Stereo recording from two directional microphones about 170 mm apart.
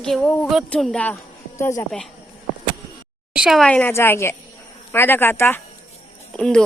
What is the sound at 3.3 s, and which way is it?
A woman's voice, centre (ahead or behind).